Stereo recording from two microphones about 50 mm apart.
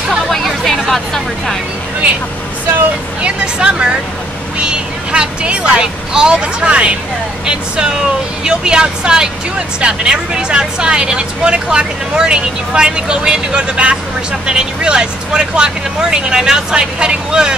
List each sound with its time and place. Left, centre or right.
0.1 s hubbub: centre
0.7 s speech: centre
3.2 s speech: centre